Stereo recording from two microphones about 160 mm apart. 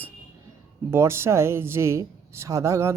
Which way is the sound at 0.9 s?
15° right (ahead or behind).